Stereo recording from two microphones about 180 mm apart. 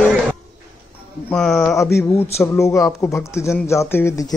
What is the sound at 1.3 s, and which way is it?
Speech, 5° left (ahead or behind).